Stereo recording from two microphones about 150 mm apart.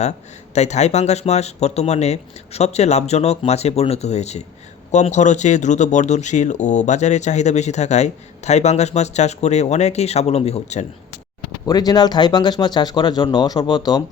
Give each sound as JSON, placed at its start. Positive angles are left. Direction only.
{"t": 0.5, "sound": "speech", "side_deg": 50}
{"t": 11.6, "sound": "speech", "side_deg": 25}